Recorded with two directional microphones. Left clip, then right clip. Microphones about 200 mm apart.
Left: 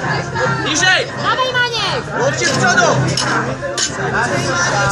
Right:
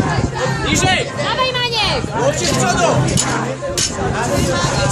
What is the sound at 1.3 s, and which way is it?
Speech, 40° left (ahead or behind).